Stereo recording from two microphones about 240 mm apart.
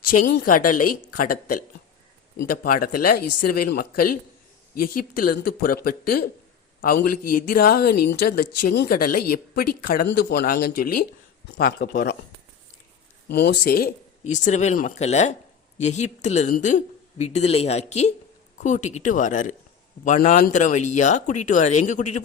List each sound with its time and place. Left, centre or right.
0.0 s speech: left
7.9 s speech: left
8.2 s speech: left
13.2 s a man's voice: left